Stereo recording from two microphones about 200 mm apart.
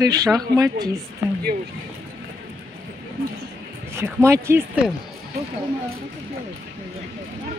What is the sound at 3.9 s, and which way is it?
Speech, 15° right (ahead or behind).